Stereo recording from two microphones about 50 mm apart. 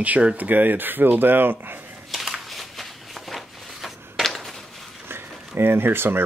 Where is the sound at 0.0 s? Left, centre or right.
Right.